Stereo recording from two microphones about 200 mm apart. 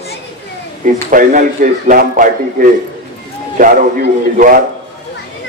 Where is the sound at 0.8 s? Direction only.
40° right (ahead or behind).